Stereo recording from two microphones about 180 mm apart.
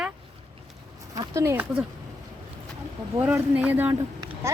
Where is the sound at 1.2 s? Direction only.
15° right (ahead or behind).